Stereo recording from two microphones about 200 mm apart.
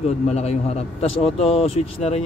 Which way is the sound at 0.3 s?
30° left (ahead or behind).